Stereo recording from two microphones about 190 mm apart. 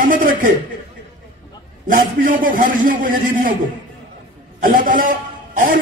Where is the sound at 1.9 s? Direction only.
45° right (ahead or behind).